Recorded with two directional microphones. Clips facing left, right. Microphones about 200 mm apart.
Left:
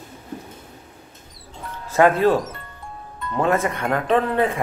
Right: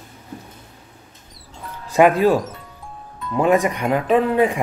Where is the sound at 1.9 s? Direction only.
15° right (ahead or behind).